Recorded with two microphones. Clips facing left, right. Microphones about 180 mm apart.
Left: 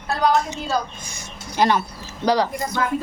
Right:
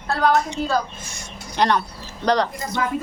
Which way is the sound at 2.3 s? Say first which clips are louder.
Even; 5° left (ahead or behind).